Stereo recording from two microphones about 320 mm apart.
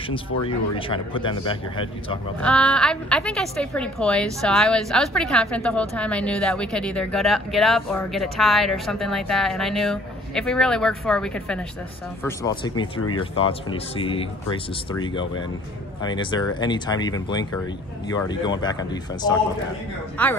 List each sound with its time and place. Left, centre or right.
0.1 s speech: centre
2.4 s a woman's voice: centre